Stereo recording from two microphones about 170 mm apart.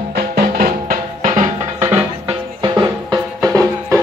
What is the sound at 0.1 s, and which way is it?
Music, 60° right (ahead or behind).